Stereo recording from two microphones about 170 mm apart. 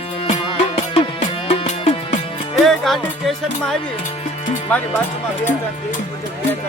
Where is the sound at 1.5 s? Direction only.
35° left (ahead or behind).